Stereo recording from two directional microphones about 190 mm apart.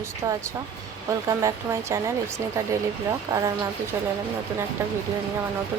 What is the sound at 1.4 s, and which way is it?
Speech, 15° right (ahead or behind).